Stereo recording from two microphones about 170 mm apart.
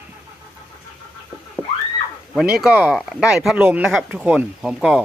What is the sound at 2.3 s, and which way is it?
Speech, centre (ahead or behind).